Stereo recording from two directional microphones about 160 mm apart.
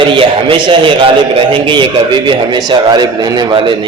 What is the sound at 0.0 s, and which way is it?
A man's voice, 35° right (ahead or behind).